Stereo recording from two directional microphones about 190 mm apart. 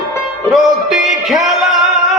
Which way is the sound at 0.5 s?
Centre (ahead or behind).